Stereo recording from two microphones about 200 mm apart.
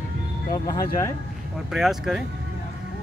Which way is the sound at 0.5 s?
20° left (ahead or behind).